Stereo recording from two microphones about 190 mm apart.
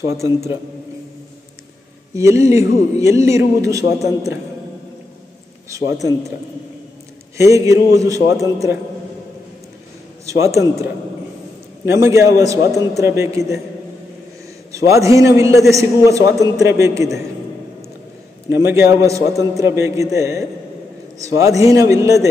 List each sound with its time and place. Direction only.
0.0 s a man's voice: 15° right (ahead or behind)
2.1 s a man's voice: 15° right (ahead or behind)
5.7 s a man's voice: 15° right (ahead or behind)
7.3 s a man's voice: 15° right (ahead or behind)
10.2 s a man's voice: 15° right (ahead or behind)
14.7 s a man's voice: 15° right (ahead or behind)
18.5 s a man's voice: 15° right (ahead or behind)